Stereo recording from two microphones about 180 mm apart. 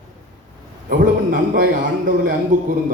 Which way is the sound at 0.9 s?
50° right (ahead or behind).